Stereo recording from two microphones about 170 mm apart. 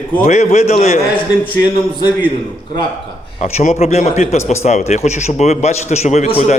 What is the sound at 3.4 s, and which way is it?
A man's voice, 40° left (ahead or behind).